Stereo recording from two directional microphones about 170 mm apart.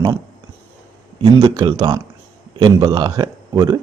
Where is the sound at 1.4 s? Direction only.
25° right (ahead or behind).